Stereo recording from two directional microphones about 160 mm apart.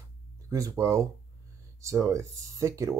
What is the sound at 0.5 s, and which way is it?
Speech, 20° right (ahead or behind).